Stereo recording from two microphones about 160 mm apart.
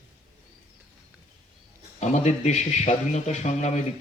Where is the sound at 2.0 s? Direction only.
45° left (ahead or behind).